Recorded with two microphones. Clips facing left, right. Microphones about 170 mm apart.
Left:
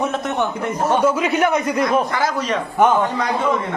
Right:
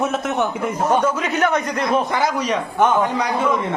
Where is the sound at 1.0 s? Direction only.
10° left (ahead or behind).